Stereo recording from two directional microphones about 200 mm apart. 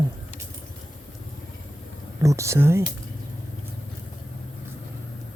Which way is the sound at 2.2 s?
15° right (ahead or behind).